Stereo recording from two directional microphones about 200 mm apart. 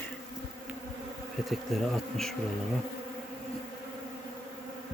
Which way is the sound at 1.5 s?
Centre (ahead or behind).